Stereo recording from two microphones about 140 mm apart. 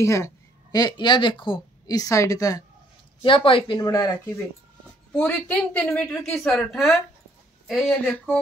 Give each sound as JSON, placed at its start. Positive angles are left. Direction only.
{"t": 0.0, "sound": "speech", "side_deg": 20}
{"t": 3.2, "sound": "speech", "side_deg": 40}
{"t": 5.1, "sound": "a woman's voice", "side_deg": 10}